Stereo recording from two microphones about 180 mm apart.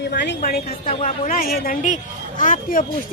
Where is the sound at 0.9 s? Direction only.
35° left (ahead or behind).